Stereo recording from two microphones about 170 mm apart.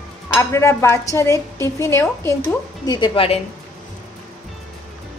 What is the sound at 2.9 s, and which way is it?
Speech, 30° left (ahead or behind).